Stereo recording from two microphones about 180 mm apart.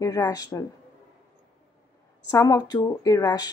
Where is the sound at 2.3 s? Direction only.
20° left (ahead or behind).